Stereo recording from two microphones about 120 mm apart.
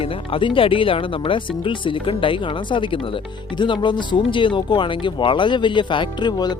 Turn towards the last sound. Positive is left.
turn(degrees=40)  # may be behind; listen again after turning